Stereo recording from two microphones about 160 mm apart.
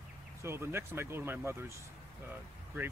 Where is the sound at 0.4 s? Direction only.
15° right (ahead or behind).